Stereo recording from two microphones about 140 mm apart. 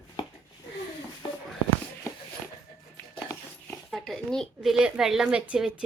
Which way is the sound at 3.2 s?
20° left (ahead or behind).